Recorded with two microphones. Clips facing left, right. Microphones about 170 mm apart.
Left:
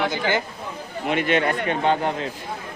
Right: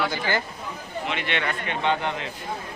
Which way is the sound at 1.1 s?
45° left (ahead or behind).